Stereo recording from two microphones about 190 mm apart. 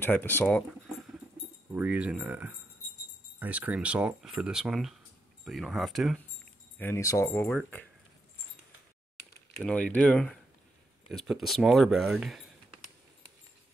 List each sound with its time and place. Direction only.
0.0 s speech: 10° left (ahead or behind)
1.7 s speech: 5° right (ahead or behind); by 7.8 s 10° left (ahead or behind)
9.6 s speech: 5° left (ahead or behind)